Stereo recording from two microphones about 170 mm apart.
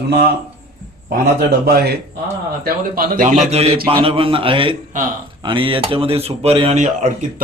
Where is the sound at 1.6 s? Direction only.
70° right (ahead or behind).